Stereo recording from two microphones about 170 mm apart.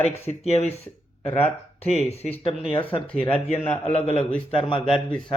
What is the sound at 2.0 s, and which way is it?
Speech, 40° left (ahead or behind).